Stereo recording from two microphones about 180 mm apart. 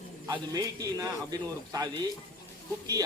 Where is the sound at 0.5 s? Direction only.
20° right (ahead or behind).